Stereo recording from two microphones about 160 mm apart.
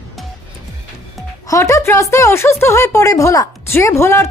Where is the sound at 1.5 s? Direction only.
20° left (ahead or behind).